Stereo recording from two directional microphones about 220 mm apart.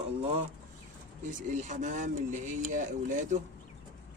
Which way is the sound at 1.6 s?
35° right (ahead or behind).